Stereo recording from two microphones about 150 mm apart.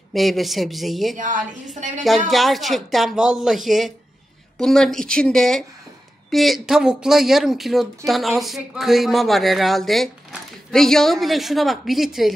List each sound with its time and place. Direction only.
0.1 s a woman's voice: centre (ahead or behind)
1.1 s a woman's voice: 60° right (ahead or behind)
2.0 s a woman's voice: centre (ahead or behind)